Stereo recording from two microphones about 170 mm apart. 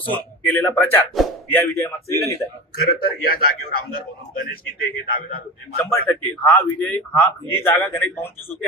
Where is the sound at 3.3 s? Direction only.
60° left (ahead or behind).